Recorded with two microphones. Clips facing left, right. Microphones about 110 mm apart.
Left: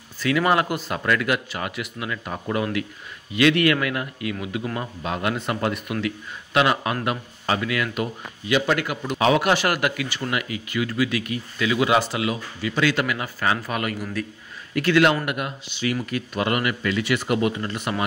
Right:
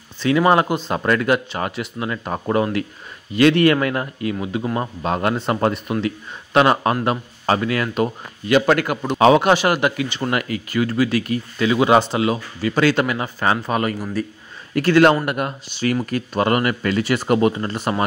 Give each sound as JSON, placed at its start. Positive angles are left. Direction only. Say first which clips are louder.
{"t": 0.2, "sound": "a man's voice", "louder": "right 5 dB", "side_deg": -25}
{"t": 10.3, "sound": "a man's voice", "louder": "right 5 dB", "side_deg": -45}
{"t": 12.6, "sound": "speech", "louder": "right 5 dB", "side_deg": -45}
{"t": 12.9, "sound": "a man's voice", "louder": "right 4 dB", "side_deg": -30}